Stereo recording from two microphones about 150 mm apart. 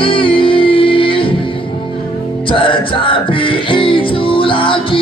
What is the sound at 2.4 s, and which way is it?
Music, 35° left (ahead or behind).